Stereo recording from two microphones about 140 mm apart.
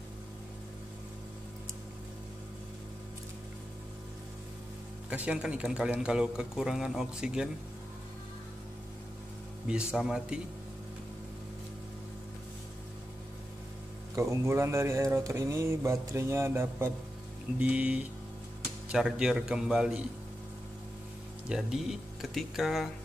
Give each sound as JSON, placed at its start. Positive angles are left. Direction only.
{"t": 5.1, "sound": "a man's voice", "side_deg": -10}
{"t": 9.7, "sound": "a man's voice", "side_deg": -5}
{"t": 14.1, "sound": "a sound", "side_deg": -20}
{"t": 17.6, "sound": "a man's voice", "side_deg": -10}
{"t": 21.5, "sound": "a man's voice", "side_deg": -5}